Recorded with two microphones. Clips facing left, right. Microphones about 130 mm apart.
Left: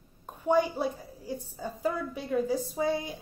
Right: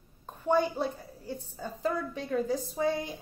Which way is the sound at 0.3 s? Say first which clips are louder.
Left 1 dB; 10° left (ahead or behind).